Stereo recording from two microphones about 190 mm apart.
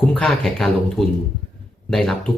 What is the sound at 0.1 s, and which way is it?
Speech, 5° left (ahead or behind).